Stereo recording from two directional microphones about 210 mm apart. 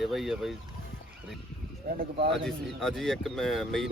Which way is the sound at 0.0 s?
Centre (ahead or behind).